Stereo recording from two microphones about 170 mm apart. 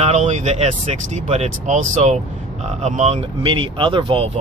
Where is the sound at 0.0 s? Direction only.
45° right (ahead or behind).